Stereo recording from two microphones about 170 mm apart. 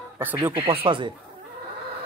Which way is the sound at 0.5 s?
30° right (ahead or behind).